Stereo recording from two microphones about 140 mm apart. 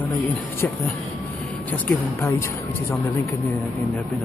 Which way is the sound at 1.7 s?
15° left (ahead or behind).